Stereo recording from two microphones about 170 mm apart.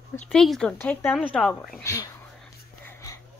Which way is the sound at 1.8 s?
20° left (ahead or behind).